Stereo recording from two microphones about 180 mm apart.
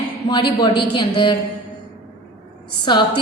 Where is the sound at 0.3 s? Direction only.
25° left (ahead or behind).